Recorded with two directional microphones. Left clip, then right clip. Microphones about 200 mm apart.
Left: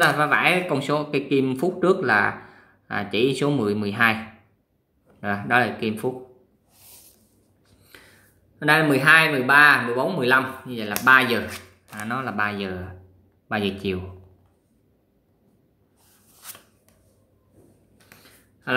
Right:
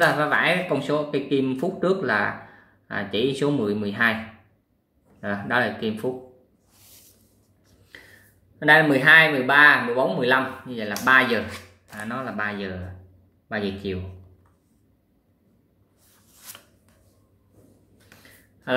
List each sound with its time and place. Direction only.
0.0 s speech: 15° left (ahead or behind)
5.2 s speech: 20° left (ahead or behind)
8.5 s speech: 20° left (ahead or behind)